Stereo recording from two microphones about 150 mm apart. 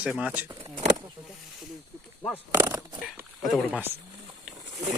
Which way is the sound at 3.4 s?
Centre (ahead or behind).